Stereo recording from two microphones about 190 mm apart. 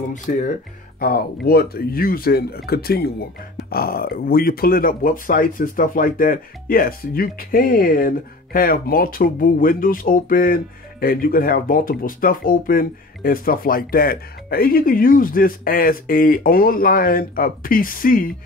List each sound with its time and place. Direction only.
0.1 s speech: 40° left (ahead or behind)
0.9 s speech: 50° left (ahead or behind)